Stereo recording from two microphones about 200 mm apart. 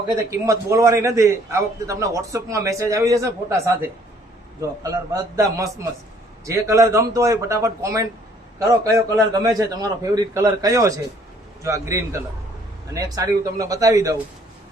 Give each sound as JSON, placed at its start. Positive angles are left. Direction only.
{"t": 0.1, "sound": "a man's voice", "side_deg": -15}
{"t": 4.8, "sound": "a man's voice", "side_deg": -15}